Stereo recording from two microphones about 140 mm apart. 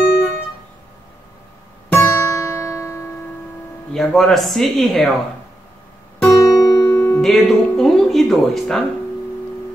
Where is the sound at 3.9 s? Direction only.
Centre (ahead or behind).